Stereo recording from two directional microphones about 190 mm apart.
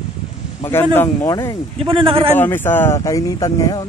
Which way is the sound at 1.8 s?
30° right (ahead or behind).